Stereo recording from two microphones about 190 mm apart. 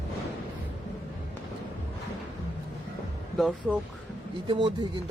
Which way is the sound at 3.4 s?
5° right (ahead or behind).